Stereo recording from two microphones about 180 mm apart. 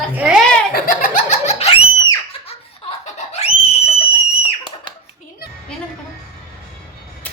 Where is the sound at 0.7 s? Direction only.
50° left (ahead or behind); by 2.6 s 30° left (ahead or behind).